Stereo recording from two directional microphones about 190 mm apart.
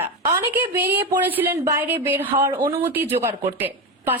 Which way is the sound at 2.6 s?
30° right (ahead or behind).